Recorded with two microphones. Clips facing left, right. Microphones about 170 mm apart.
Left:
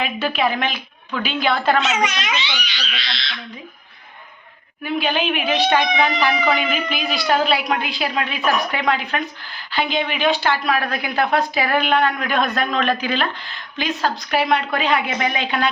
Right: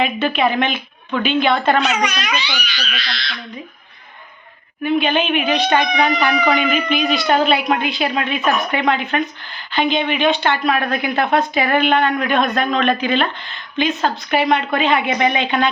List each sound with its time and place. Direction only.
0.0 s speech: centre (ahead or behind)
1.8 s a child's voice: 25° left (ahead or behind)
4.8 s speech: 5° left (ahead or behind)